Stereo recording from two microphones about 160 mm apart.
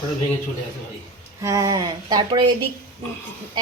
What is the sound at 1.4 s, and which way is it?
A woman's voice, 20° right (ahead or behind).